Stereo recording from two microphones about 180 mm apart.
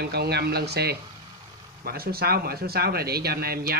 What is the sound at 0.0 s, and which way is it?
Speech, 60° right (ahead or behind).